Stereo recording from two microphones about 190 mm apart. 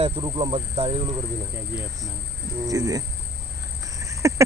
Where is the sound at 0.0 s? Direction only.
30° right (ahead or behind).